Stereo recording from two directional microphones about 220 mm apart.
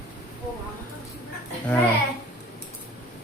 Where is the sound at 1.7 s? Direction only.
5° left (ahead or behind).